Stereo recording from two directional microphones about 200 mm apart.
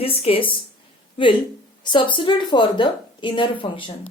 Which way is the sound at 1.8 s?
25° left (ahead or behind).